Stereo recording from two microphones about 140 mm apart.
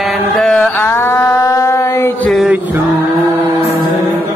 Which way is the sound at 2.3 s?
Centre (ahead or behind).